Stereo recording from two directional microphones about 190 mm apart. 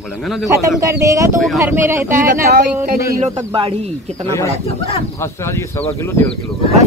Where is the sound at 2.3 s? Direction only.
50° right (ahead or behind).